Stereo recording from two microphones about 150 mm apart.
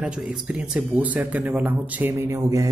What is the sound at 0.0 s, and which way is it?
Speech, 10° right (ahead or behind).